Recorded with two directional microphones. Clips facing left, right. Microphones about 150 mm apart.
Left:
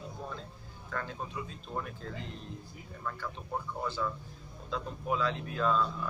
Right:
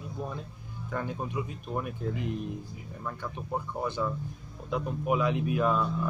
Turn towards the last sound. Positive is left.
turn(degrees=-15)  # may be behind; listen again after turning